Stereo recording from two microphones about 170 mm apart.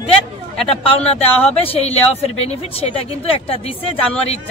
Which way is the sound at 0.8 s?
35° left (ahead or behind).